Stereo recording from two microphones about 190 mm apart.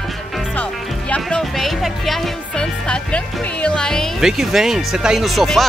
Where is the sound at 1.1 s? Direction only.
5° left (ahead or behind).